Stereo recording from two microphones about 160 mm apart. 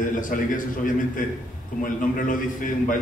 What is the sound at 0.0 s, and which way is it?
Speech, 55° left (ahead or behind).